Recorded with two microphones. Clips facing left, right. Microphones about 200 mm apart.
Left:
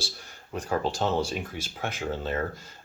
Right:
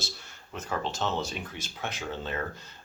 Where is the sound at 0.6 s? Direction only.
40° left (ahead or behind).